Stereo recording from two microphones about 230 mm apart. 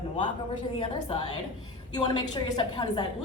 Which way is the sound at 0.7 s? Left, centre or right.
Left.